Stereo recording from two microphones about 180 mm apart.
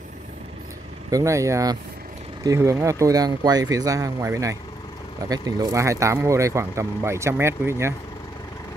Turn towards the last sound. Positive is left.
turn(degrees=-15)  # may be behind; listen again after turning